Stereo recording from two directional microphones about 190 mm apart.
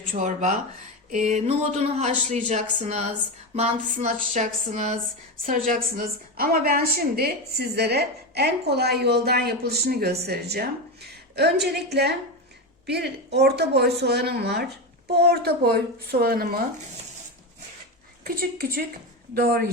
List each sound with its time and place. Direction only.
0.1 s a woman's voice: 40° right (ahead or behind)
18.2 s speech: 50° right (ahead or behind)